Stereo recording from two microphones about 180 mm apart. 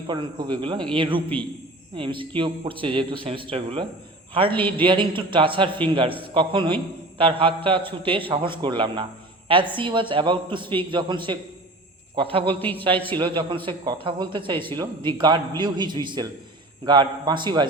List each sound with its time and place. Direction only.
0.1 s a man's voice: 25° right (ahead or behind)
12.5 s a man's voice: 10° left (ahead or behind)
13.1 s a man's voice: 25° right (ahead or behind)